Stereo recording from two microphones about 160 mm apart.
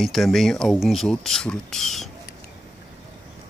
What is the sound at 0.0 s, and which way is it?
Speech, centre (ahead or behind).